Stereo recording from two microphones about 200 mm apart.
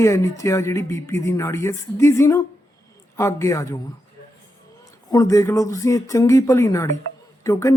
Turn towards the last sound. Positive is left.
turn(degrees=15)  # may be behind; listen again after turning